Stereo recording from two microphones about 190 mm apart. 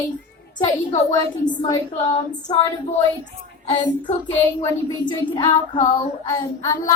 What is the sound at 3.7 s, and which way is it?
A woman's voice, 25° left (ahead or behind).